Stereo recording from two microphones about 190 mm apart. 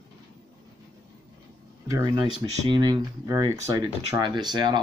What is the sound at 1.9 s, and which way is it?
Speech, 20° right (ahead or behind).